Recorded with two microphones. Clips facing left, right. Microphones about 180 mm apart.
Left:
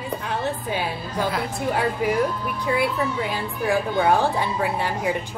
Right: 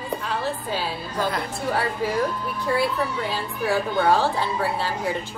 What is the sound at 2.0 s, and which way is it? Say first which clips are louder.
Speech: left 5 dB; 15° left (ahead or behind).